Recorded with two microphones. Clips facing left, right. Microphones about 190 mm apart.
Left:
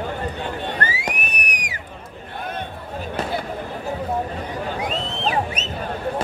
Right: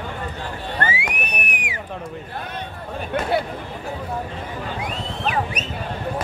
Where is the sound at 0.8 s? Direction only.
40° left (ahead or behind).